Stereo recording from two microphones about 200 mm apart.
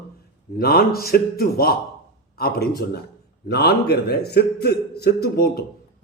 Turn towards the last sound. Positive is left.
turn(degrees=50)  # may be behind; listen again after turning